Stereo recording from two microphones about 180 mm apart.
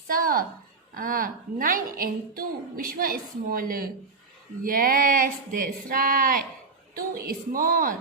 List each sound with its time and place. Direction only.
0.1 s a woman's voice: 50° right (ahead or behind)